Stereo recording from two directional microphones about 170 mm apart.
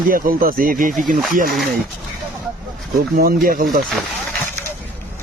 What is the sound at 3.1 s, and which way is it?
Speech, 60° right (ahead or behind).